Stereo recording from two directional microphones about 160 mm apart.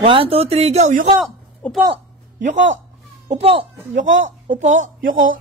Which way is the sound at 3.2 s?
40° right (ahead or behind).